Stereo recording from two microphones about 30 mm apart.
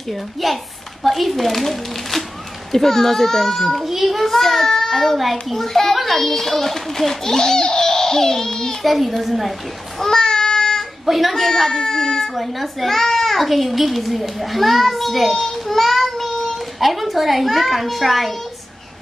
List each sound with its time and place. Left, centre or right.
0.1 s a woman's voice: centre
3.8 s a child's voice: centre
8.8 s a woman's voice: centre
9.9 s child singing: centre
11.1 s a woman's voice: centre
11.3 s a child's voice: centre
12.4 s a child's voice: centre